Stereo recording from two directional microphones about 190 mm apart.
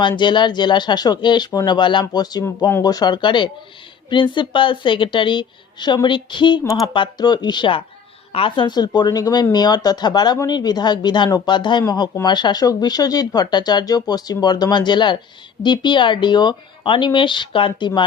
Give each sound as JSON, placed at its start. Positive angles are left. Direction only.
{"t": 0.2, "sound": "speech", "side_deg": 25}